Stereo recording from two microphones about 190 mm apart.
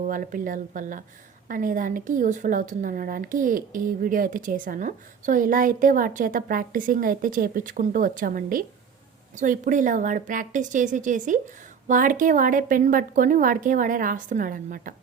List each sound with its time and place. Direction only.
0.0 s a woman's voice: 45° right (ahead or behind)